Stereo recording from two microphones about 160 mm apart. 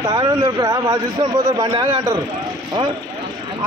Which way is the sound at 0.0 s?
25° right (ahead or behind).